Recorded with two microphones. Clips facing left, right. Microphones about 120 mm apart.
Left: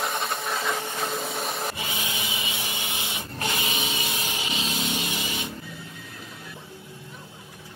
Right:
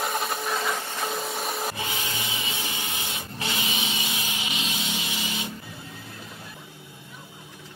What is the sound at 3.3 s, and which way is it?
Printer, 45° left (ahead or behind).